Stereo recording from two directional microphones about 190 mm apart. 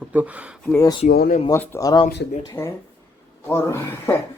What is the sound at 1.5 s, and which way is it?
Speech, 10° left (ahead or behind).